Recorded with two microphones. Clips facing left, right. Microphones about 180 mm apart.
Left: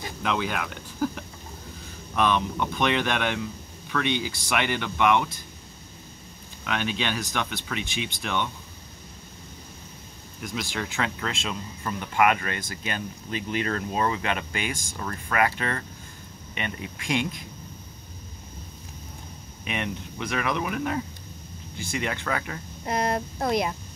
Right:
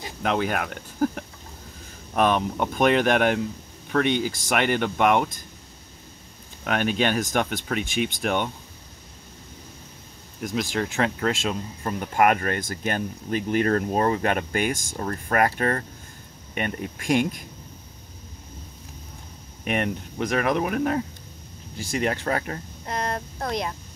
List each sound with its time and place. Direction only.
0.2 s speech: 45° right (ahead or behind)
6.6 s speech: 45° right (ahead or behind)
10.4 s speech: 40° right (ahead or behind)
19.6 s speech: 45° right (ahead or behind)
22.8 s speech: 10° left (ahead or behind)